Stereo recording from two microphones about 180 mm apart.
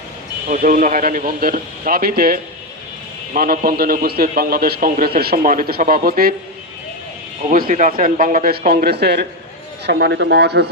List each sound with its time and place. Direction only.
0.4 s a man's voice: 50° right (ahead or behind)
7.5 s speech: 50° right (ahead or behind); by 10.7 s 65° right (ahead or behind)